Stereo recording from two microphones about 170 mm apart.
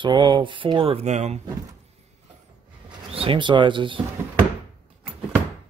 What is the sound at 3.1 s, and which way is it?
Speech, 35° right (ahead or behind).